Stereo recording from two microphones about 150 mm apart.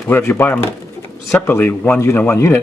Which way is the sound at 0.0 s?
15° left (ahead or behind).